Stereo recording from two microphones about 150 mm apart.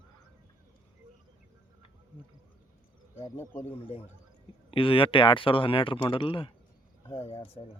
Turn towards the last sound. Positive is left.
turn(degrees=40)  # may be behind; listen again after turning